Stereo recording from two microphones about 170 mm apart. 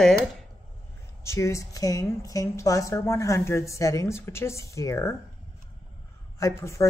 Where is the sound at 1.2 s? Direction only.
15° left (ahead or behind).